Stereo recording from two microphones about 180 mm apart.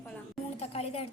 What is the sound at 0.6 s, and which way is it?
Speech, 35° left (ahead or behind).